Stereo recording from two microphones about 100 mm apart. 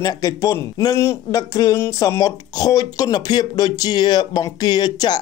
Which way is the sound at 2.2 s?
40° left (ahead or behind).